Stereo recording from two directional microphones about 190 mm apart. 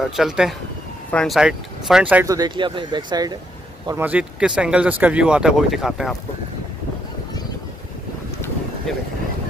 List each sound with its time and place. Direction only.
0.0 s speech: centre (ahead or behind)
2.2 s speech: 20° right (ahead or behind)
3.8 s speech: 10° right (ahead or behind)